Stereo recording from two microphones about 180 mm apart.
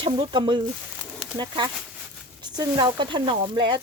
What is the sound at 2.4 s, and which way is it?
Speech, 25° right (ahead or behind).